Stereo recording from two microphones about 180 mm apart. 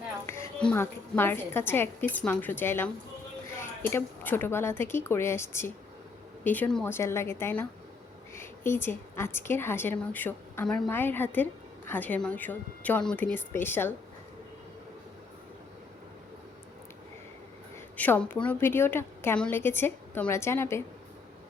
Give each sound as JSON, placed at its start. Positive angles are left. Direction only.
{"t": 0.3, "sound": "music", "side_deg": 15}
{"t": 0.6, "sound": "a woman's voice", "side_deg": 10}
{"t": 17.9, "sound": "a woman's voice", "side_deg": 10}